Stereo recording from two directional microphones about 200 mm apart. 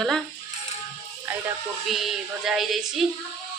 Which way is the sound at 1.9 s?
Centre (ahead or behind).